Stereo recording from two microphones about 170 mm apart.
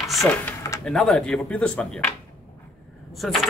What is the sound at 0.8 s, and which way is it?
A man's voice, 5° left (ahead or behind).